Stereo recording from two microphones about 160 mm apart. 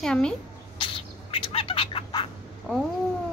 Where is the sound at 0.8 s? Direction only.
30° left (ahead or behind).